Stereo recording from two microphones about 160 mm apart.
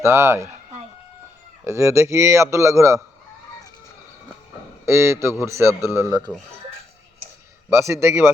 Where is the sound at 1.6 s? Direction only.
15° right (ahead or behind).